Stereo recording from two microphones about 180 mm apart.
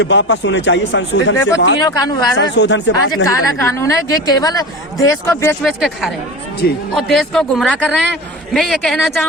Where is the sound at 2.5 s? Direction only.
80° left.